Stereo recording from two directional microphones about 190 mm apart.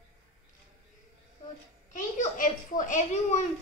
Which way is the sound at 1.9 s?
45° left (ahead or behind).